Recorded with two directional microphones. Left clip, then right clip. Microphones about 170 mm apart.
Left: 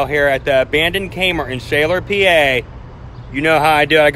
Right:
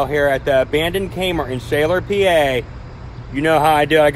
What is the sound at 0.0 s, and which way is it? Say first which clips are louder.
Speech: left 2 dB; centre (ahead or behind).